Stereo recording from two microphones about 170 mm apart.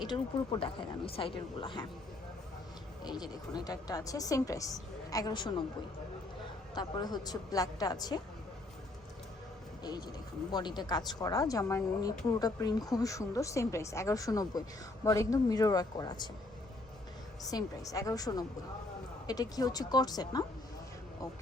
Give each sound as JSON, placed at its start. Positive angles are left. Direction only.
{"t": 0.0, "sound": "speech", "side_deg": 25}
{"t": 3.0, "sound": "speech", "side_deg": 25}
{"t": 6.7, "sound": "speech", "side_deg": 25}
{"t": 9.8, "sound": "speech", "side_deg": 25}
{"t": 17.4, "sound": "speech", "side_deg": 20}